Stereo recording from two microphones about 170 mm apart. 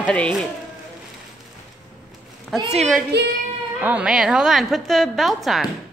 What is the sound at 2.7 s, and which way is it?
A woman's voice, centre (ahead or behind).